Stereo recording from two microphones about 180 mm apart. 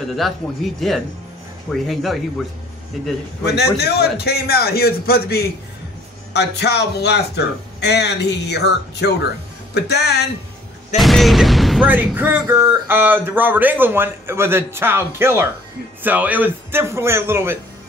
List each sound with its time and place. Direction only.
0.7 s speech: centre (ahead or behind)
3.4 s a man's voice: 65° left (ahead or behind)
11.0 s speech: centre (ahead or behind)